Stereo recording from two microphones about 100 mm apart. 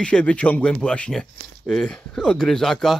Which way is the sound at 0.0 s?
10° left (ahead or behind).